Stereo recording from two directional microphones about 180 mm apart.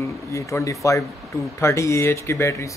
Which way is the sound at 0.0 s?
15° left (ahead or behind).